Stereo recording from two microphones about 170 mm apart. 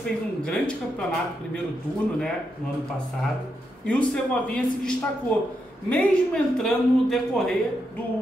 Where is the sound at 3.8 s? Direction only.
5° left (ahead or behind).